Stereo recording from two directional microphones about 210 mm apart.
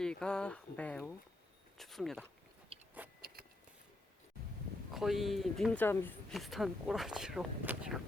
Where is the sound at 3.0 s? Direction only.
10° right (ahead or behind).